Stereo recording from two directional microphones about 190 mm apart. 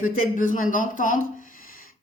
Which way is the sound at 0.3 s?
45° left (ahead or behind).